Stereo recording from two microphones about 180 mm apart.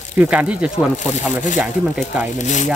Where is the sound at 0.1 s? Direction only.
5° right (ahead or behind).